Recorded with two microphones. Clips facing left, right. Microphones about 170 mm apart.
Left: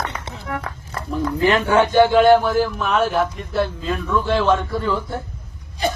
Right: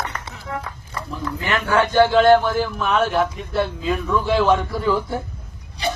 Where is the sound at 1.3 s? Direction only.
30° left (ahead or behind).